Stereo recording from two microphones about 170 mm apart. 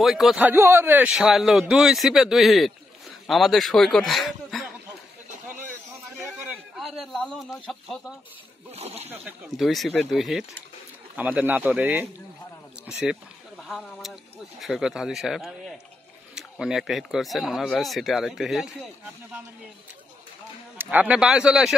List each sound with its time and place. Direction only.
0.0 s speech: centre (ahead or behind)
0.5 s speech: 15° right (ahead or behind)
6.0 s a sound: centre (ahead or behind)
8.7 s speech: 40° right (ahead or behind)
9.1 s speech: 5° right (ahead or behind)
20.7 s speech: 10° right (ahead or behind)